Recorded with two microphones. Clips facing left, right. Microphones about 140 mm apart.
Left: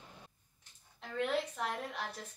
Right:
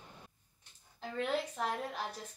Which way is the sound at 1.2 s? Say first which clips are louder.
Even; centre (ahead or behind).